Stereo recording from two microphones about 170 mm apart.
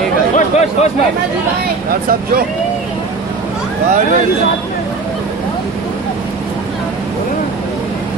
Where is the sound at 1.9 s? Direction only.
60° right (ahead or behind).